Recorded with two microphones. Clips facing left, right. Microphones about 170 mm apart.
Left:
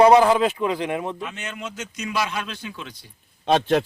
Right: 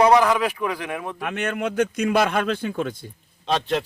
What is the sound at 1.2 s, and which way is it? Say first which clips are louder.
Speech: right 7 dB; 60° right (ahead or behind).